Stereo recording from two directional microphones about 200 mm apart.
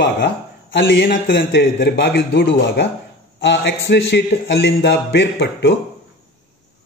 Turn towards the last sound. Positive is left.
turn(degrees=60)  # may be behind; listen again after turning